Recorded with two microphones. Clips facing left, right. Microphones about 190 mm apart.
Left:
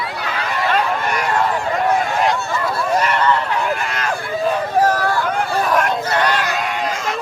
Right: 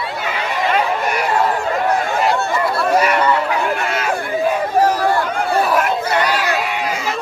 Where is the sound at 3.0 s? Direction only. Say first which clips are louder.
Right 2 dB; 10° right (ahead or behind).